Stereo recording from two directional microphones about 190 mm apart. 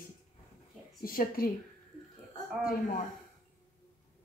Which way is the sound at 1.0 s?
50° left (ahead or behind).